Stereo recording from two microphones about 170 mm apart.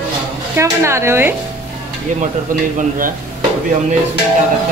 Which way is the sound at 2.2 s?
50° right (ahead or behind).